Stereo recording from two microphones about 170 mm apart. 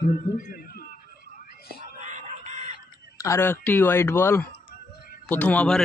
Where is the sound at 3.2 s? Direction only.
15° left (ahead or behind).